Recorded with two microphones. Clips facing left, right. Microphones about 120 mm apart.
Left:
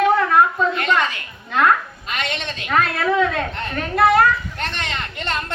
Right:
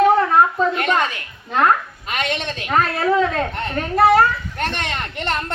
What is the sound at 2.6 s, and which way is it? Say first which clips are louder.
A woman's voice: right 1 dB; 35° right (ahead or behind).